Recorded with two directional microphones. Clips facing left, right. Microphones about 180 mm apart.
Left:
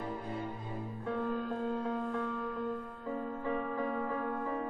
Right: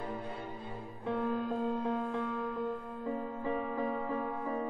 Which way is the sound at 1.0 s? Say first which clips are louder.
Right 2 dB; 10° right (ahead or behind).